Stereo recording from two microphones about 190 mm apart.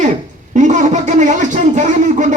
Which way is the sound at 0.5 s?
40° right (ahead or behind).